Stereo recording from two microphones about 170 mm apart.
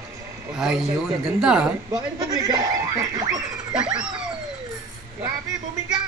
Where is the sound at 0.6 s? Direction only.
5° right (ahead or behind).